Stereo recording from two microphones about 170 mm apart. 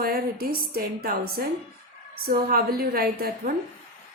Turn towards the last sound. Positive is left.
turn(degrees=-60)  # may be behind; listen again after turning